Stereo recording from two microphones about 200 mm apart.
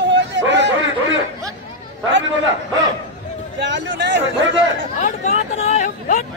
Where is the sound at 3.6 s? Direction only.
60° right (ahead or behind).